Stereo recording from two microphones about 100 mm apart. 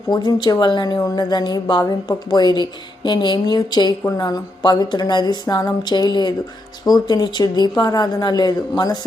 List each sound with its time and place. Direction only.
0.1 s a woman's voice: 45° left (ahead or behind)